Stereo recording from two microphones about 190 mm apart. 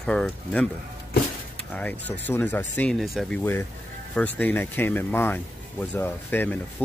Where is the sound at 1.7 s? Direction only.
10° left (ahead or behind).